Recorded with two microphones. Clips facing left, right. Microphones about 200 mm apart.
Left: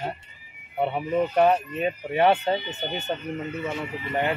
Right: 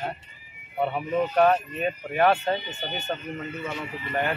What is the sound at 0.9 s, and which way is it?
Speech, 20° left (ahead or behind).